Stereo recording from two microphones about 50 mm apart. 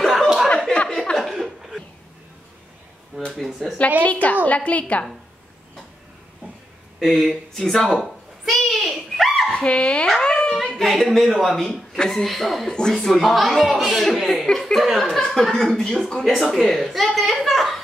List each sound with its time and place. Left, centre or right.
0.0 s chuckle: centre
3.4 s speech: centre
4.0 s a woman's voice: left
7.0 s a sound: centre
9.6 s a woman's voice: left
10.0 s dog: centre
10.8 s speech: centre
12.6 s speech: centre
12.9 s speech: centre